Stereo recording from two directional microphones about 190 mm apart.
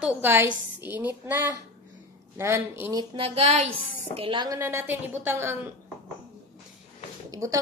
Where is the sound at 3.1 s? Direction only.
30° right (ahead or behind); by 5.5 s 10° right (ahead or behind).